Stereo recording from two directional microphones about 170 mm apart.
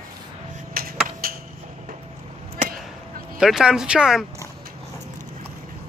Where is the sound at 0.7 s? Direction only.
60° right (ahead or behind).